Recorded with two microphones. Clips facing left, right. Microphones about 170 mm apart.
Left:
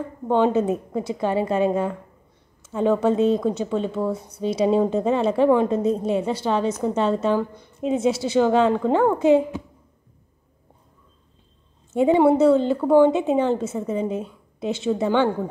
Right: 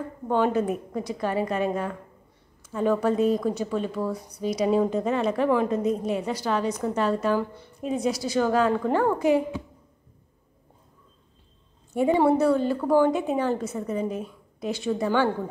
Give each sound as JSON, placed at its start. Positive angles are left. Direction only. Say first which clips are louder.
{"t": 0.3, "sound": "a woman's voice", "louder": "left 4 dB", "side_deg": 25}
{"t": 11.9, "sound": "a woman's voice", "louder": "left 4 dB", "side_deg": 20}